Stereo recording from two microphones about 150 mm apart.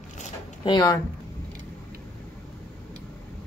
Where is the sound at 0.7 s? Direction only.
30° left (ahead or behind).